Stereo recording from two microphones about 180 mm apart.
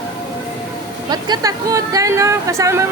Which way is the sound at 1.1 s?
20° right (ahead or behind).